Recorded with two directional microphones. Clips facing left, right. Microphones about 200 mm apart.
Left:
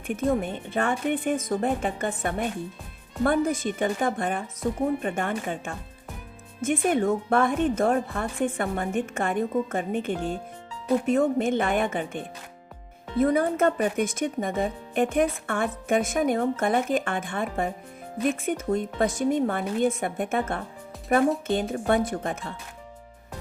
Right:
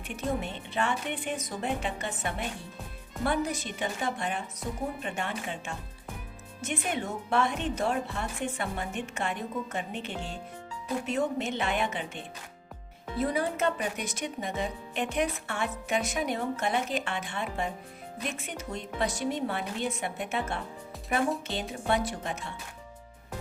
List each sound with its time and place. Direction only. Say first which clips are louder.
0.1 s speech: left 7 dB; 50° left (ahead or behind)